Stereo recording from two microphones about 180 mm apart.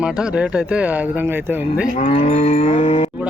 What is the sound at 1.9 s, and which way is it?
Cattle, 40° left (ahead or behind).